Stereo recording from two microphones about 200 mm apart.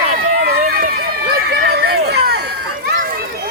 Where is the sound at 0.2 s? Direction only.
90° right.